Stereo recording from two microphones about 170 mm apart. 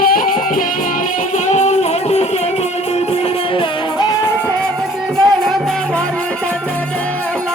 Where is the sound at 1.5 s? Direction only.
40° left (ahead or behind).